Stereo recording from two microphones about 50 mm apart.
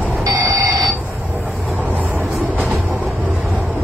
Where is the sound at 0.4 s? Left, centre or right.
Right.